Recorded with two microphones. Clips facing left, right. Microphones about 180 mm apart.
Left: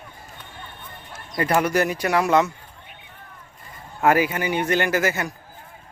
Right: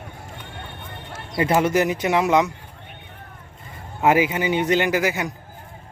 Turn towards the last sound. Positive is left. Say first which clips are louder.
# right 1 dB
turn(degrees=-15)  # may be behind; listen again after turning